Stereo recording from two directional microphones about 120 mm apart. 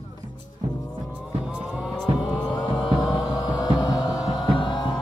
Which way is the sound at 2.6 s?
40° left (ahead or behind).